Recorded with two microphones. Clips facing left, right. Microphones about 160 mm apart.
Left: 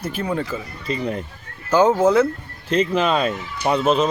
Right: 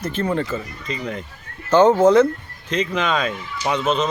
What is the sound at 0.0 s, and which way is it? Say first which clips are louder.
Speech: right 2 dB; 10° left (ahead or behind).